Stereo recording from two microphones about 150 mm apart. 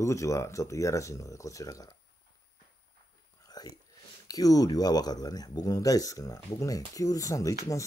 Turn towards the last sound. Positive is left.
turn(degrees=20)  # may be behind; listen again after turning